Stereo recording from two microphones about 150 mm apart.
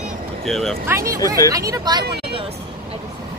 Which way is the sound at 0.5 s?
5° left (ahead or behind).